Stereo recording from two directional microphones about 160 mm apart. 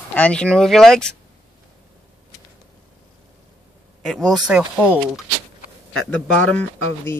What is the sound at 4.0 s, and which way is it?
Speech, centre (ahead or behind).